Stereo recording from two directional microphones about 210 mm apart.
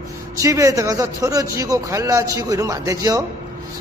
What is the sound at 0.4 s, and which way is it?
A man's voice, 15° right (ahead or behind).